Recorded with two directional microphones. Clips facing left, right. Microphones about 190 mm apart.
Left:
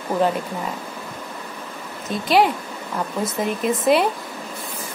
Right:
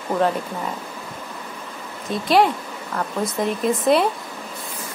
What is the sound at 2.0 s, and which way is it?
Speech, centre (ahead or behind).